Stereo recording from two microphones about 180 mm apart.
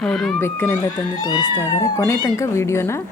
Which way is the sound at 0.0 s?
Centre (ahead or behind).